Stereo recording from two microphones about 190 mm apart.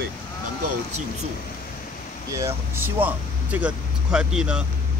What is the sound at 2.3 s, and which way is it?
Speech, 15° right (ahead or behind).